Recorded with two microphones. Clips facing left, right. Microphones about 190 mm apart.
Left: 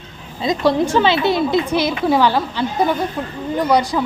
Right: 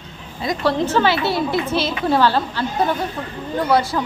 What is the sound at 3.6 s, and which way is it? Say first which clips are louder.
Speech: left 1 dB; 15° left (ahead or behind).